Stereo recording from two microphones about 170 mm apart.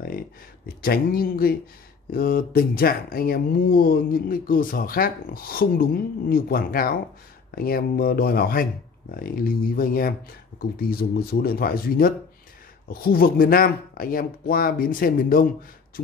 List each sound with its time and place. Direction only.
0.8 s speech: 60° left (ahead or behind)